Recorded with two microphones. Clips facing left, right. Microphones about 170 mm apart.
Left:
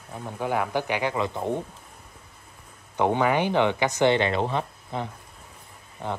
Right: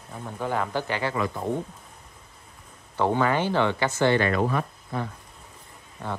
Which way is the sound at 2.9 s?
15° left (ahead or behind).